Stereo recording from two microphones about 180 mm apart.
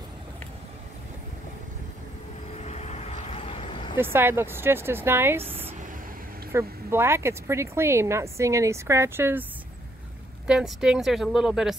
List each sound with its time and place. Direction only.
2.5 s vehicle: 35° left (ahead or behind)
4.0 s speech: 10° right (ahead or behind)
6.5 s speech: 15° right (ahead or behind)